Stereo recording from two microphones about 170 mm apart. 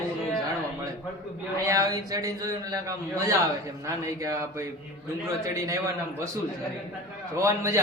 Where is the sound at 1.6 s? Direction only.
20° right (ahead or behind).